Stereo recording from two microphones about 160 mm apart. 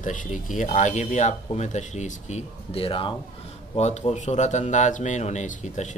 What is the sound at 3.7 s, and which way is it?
Speech, 45° left (ahead or behind).